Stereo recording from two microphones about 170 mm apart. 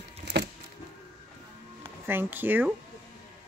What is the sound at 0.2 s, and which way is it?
Music, 80° right.